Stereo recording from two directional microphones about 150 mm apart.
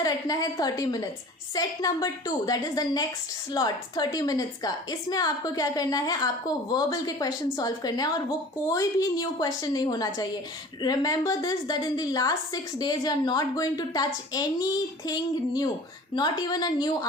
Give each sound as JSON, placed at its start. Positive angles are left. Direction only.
{"t": 0.0, "sound": "a woman's voice", "side_deg": 25}